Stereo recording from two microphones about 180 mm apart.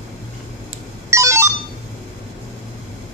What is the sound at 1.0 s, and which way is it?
Telephone, 15° right (ahead or behind).